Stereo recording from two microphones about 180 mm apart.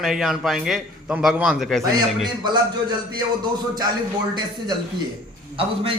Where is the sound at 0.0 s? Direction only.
Centre (ahead or behind).